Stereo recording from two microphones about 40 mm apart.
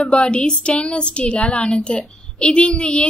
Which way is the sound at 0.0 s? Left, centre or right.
Left.